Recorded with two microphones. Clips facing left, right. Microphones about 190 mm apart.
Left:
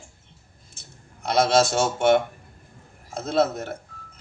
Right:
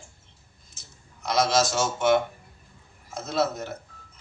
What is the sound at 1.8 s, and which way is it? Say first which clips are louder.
A man's voice: left 3 dB; 55° left (ahead or behind).